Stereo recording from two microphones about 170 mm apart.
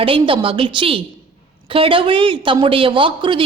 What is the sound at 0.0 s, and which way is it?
A woman's voice, 30° right (ahead or behind).